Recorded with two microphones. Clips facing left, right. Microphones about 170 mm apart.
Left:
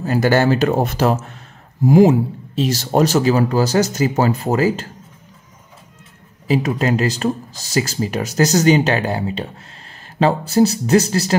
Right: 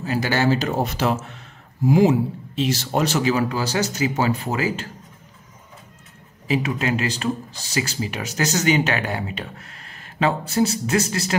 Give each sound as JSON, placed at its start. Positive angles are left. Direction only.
{"t": 0.0, "sound": "speech", "side_deg": 45}
{"t": 6.4, "sound": "speech", "side_deg": 40}